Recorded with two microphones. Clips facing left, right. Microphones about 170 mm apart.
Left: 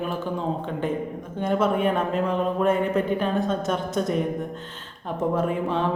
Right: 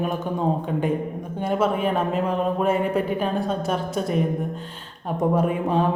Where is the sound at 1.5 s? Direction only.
5° right (ahead or behind).